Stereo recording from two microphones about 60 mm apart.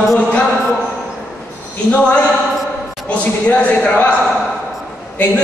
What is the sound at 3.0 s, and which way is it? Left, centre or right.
Speech, left.